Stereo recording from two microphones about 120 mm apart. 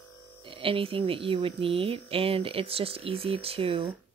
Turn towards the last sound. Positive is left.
turn(degrees=-50)  # may be behind; listen again after turning